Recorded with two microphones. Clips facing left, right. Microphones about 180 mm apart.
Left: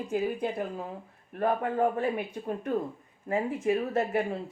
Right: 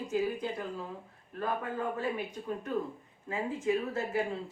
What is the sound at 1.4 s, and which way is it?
Speech, 60° left (ahead or behind).